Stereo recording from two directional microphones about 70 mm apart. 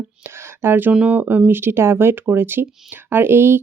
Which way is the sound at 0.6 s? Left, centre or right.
Right.